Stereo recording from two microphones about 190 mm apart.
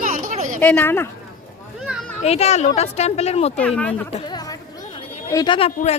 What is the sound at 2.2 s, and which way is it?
Speech, 35° left (ahead or behind).